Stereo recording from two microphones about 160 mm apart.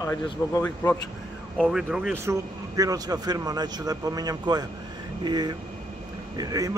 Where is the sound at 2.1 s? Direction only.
15° right (ahead or behind).